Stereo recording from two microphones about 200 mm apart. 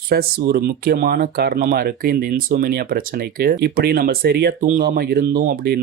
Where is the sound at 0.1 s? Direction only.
50° right (ahead or behind).